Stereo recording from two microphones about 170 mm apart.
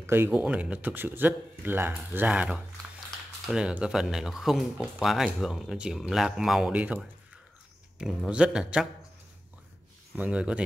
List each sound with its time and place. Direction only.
0.0 s speech: 15° right (ahead or behind)
10.1 s speech: 10° right (ahead or behind)